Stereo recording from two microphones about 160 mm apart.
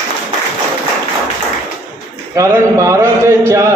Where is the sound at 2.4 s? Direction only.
20° right (ahead or behind).